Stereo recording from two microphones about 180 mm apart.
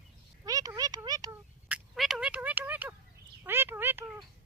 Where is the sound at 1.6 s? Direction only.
5° right (ahead or behind).